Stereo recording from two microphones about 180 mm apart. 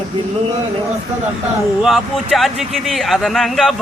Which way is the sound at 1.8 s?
Centre (ahead or behind).